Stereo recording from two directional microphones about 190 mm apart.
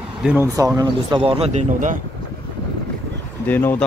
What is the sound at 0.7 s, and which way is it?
Speech, 25° right (ahead or behind).